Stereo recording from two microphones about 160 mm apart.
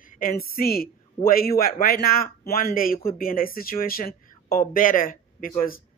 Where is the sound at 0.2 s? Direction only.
65° left (ahead or behind).